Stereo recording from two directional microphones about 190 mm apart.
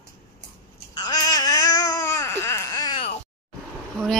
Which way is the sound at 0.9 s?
20° left (ahead or behind).